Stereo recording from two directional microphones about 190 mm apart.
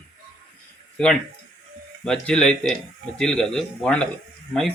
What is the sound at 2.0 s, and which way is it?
A man's voice, 5° left (ahead or behind).